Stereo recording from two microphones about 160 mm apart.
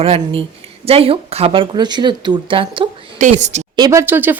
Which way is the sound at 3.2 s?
45° right (ahead or behind).